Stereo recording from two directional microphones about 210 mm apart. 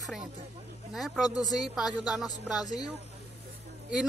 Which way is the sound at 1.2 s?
20° left (ahead or behind).